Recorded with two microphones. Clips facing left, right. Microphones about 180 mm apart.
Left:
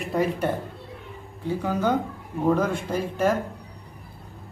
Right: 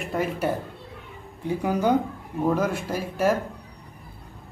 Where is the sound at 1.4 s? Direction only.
15° right (ahead or behind).